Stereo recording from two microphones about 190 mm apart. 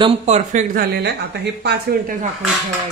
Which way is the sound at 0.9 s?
60° right (ahead or behind).